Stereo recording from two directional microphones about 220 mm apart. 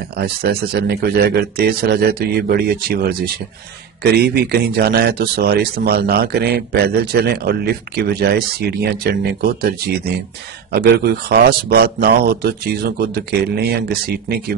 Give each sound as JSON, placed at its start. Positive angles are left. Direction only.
{"t": 0.2, "sound": "speech", "side_deg": -45}